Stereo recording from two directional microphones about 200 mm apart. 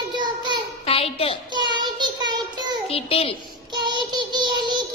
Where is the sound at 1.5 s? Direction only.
20° right (ahead or behind).